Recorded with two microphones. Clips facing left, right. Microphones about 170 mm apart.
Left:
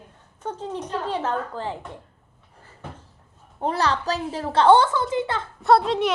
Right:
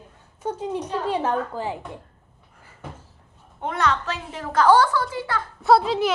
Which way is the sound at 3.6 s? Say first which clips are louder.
Left 1 dB; 35° left (ahead or behind).